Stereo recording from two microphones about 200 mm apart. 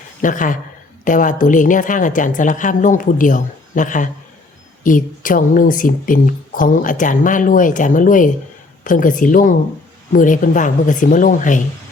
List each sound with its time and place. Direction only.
0.2 s speech: 40° left (ahead or behind)